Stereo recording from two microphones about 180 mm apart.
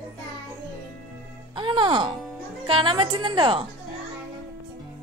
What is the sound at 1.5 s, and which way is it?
Music, 25° right (ahead or behind).